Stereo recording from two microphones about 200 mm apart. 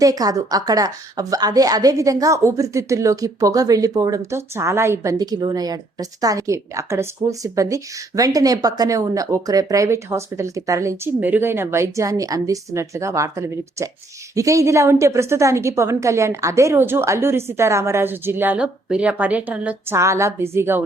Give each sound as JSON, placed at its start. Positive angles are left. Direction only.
{"t": 0.0, "sound": "a woman's voice", "side_deg": -20}